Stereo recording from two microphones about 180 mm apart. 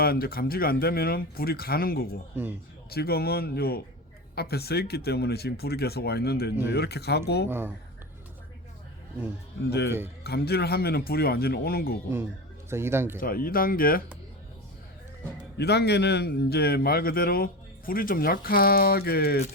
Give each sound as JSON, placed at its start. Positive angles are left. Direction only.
{"t": 0.0, "sound": "a man's voice", "side_deg": 55}
{"t": 2.3, "sound": "speech", "side_deg": -10}
{"t": 2.9, "sound": "a man's voice", "side_deg": 60}
{"t": 9.6, "sound": "a man's voice", "side_deg": 70}
{"t": 12.7, "sound": "speech", "side_deg": -15}
{"t": 13.1, "sound": "speech", "side_deg": 55}
{"t": 15.5, "sound": "a man's voice", "side_deg": 65}